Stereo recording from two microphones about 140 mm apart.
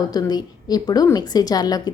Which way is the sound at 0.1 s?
30° left (ahead or behind).